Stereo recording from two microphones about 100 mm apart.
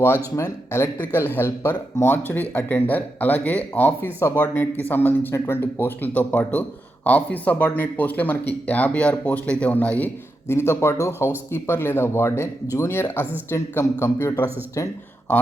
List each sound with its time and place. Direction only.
0.3 s speech: 30° left (ahead or behind)
10.5 s speech: 25° left (ahead or behind)